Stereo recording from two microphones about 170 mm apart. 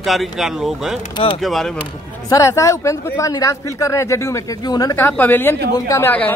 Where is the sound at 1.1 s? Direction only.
30° left (ahead or behind).